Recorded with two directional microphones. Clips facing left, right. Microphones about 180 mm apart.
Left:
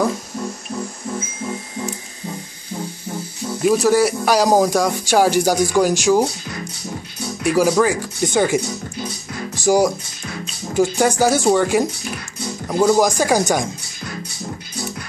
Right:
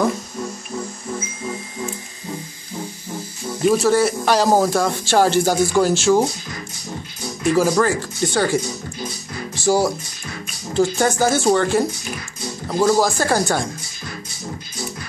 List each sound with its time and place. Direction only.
3.6 s speech: 10° left (ahead or behind)
7.4 s speech: 10° left (ahead or behind)
9.7 s speech: 10° left (ahead or behind)